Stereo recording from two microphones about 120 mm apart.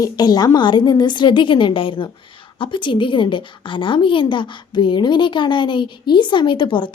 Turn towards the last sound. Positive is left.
turn(degrees=40)  # may be behind; listen again after turning